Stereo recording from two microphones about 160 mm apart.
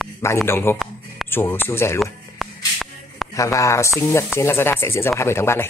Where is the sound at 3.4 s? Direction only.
20° left (ahead or behind).